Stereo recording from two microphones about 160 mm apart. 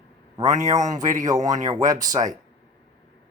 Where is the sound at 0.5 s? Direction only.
50° right (ahead or behind).